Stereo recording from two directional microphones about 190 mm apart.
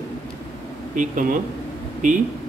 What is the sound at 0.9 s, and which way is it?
Speech, 45° right (ahead or behind).